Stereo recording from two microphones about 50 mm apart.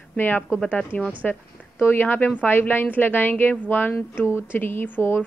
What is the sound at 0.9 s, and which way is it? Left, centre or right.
Speech, left.